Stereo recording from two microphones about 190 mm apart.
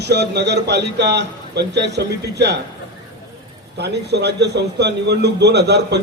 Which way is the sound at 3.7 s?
60° right (ahead or behind).